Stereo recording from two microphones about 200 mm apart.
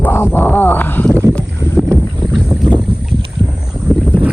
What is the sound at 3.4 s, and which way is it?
Boat, 25° right (ahead or behind).